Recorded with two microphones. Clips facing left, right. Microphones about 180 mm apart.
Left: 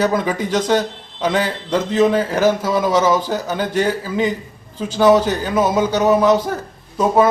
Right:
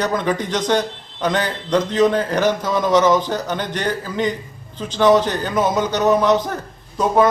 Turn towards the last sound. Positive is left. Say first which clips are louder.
# left 1 dB
turn(degrees=5)  # may be behind; listen again after turning